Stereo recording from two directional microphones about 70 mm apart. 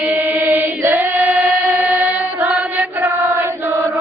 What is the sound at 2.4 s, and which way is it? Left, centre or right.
Chant, right.